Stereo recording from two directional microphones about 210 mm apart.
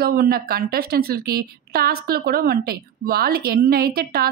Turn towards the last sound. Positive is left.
turn(degrees=-45)  # may be behind; listen again after turning